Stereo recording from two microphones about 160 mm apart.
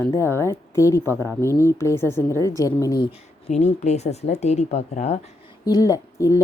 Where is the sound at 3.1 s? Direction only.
45° left (ahead or behind).